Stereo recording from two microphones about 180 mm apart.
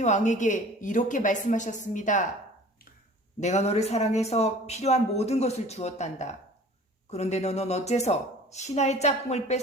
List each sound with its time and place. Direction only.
0.0 s a woman's voice: 40° left (ahead or behind)
3.4 s speech: 35° left (ahead or behind)